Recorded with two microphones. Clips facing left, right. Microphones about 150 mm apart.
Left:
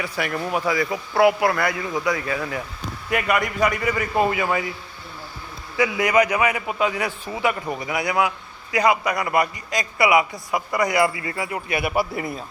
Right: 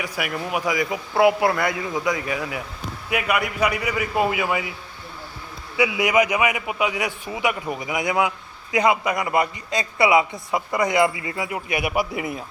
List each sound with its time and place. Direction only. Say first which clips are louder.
0.0 s a man's voice: left 2 dB; 10° right (ahead or behind)
5.7 s a man's voice: even; 10° right (ahead or behind)